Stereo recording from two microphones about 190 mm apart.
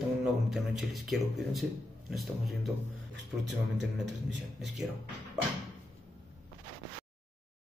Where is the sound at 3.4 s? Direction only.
70° right (ahead or behind).